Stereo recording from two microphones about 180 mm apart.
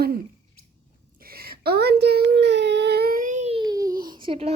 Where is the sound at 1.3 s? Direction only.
60° right (ahead or behind); by 3.6 s 40° right (ahead or behind).